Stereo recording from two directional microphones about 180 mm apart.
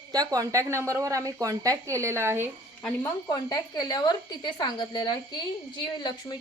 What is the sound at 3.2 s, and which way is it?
A woman's voice, 20° left (ahead or behind).